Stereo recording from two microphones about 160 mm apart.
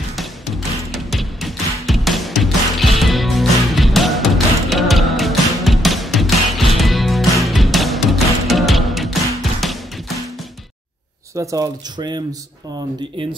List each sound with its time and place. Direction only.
0.1 s music: centre (ahead or behind)
11.3 s speech: 20° right (ahead or behind)